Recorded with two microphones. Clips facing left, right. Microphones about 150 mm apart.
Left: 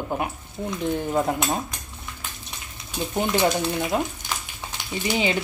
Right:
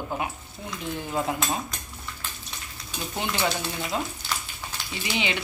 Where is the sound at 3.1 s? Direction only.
50° left (ahead or behind).